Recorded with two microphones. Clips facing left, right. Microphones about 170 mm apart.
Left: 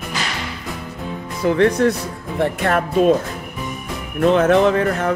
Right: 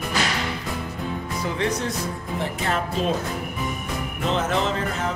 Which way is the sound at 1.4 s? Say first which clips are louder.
Left 12 dB; 60° left (ahead or behind).